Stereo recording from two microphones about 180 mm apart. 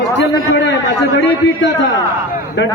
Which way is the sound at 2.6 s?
80° left.